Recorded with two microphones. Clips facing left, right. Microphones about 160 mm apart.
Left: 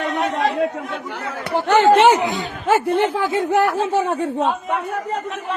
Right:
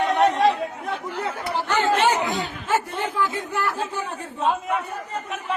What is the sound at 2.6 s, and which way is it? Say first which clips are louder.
Speech: left 9 dB; 75° left (ahead or behind).